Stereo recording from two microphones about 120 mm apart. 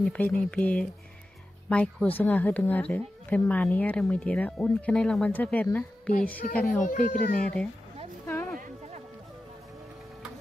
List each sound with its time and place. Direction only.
0.0 s speech: 10° left (ahead or behind)
6.8 s a child's voice: 90° left